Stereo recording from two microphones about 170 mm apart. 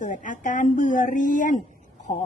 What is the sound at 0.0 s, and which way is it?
A woman's voice, 50° left (ahead or behind).